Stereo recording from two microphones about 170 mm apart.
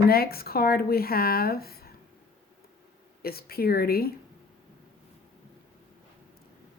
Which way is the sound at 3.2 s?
65° left (ahead or behind).